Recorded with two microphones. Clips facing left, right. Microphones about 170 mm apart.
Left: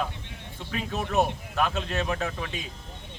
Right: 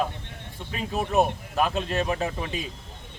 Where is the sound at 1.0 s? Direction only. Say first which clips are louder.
Right 3 dB; 20° right (ahead or behind).